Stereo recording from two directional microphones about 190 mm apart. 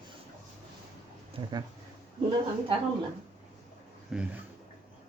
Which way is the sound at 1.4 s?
25° right (ahead or behind).